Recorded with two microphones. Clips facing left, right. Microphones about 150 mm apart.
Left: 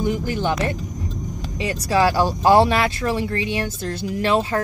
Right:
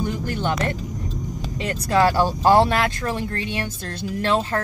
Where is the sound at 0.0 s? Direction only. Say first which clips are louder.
Left 3 dB; 10° left (ahead or behind).